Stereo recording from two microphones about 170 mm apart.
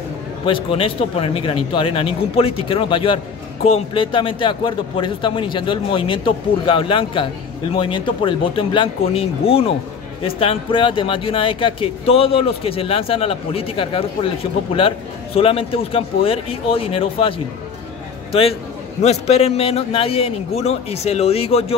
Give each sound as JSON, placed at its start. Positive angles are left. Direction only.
{"t": 0.5, "sound": "speech", "side_deg": 30}